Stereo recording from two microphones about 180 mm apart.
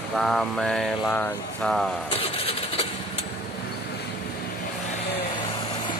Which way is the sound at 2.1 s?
35° left (ahead or behind).